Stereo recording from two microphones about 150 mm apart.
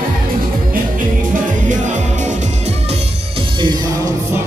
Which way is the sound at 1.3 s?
55° right (ahead or behind).